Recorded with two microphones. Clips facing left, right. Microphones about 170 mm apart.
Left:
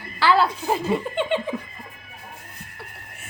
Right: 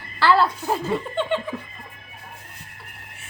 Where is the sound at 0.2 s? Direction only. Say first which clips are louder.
Right 1 dB; centre (ahead or behind).